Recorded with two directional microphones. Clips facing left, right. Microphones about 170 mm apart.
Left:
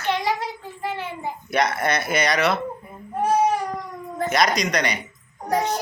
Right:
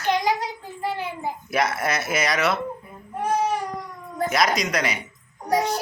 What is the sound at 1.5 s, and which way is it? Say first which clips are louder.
A man's voice: left 2 dB; 5° right (ahead or behind).